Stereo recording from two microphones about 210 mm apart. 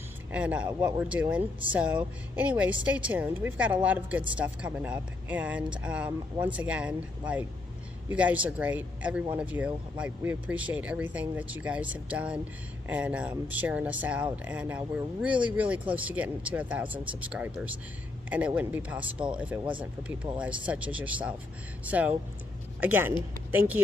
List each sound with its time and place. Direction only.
0.3 s speech: 5° right (ahead or behind)
0.7 s speech: 20° right (ahead or behind)
1.0 s speech: 5° right (ahead or behind)